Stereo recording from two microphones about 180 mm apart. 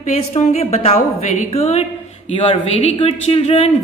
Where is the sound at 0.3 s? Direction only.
35° left (ahead or behind).